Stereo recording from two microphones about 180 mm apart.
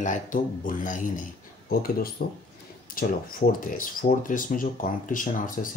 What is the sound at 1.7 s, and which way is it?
Speech, 55° left (ahead or behind).